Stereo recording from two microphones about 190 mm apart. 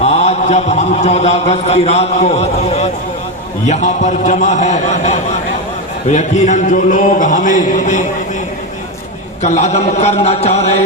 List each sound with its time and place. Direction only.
0.0 s a man's voice: 35° left (ahead or behind)
9.4 s a man's voice: 35° left (ahead or behind)